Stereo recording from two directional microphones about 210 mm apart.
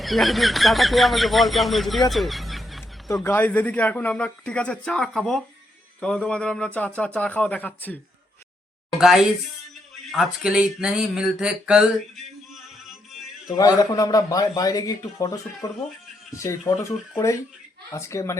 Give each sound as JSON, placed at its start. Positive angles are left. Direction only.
{"t": 0.0, "sound": "speech", "side_deg": 0}
{"t": 9.0, "sound": "speech", "side_deg": 0}
{"t": 13.6, "sound": "speech", "side_deg": 15}